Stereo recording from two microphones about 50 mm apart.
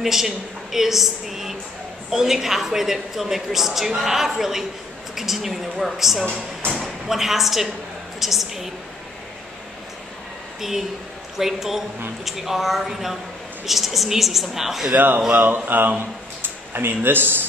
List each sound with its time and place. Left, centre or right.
0.0 s a woman's voice: centre
11.3 s a woman's voice: centre
15.0 s a sound: right
16.4 s speech: right